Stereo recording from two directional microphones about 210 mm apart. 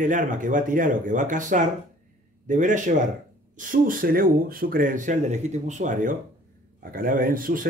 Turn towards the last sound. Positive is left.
turn(degrees=-40)  # may be behind; listen again after turning